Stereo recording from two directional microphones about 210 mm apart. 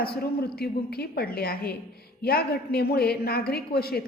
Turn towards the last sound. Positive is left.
turn(degrees=45)  # may be behind; listen again after turning